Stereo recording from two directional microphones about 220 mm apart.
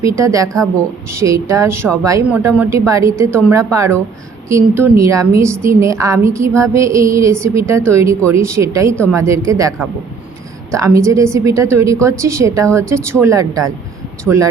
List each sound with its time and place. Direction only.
0.0 s a woman's voice: 15° right (ahead or behind)